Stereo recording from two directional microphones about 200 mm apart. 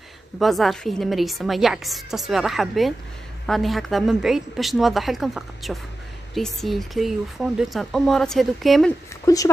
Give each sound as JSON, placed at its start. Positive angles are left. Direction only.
{"t": 0.4, "sound": "speech", "side_deg": 0}
{"t": 9.2, "sound": "speech", "side_deg": 15}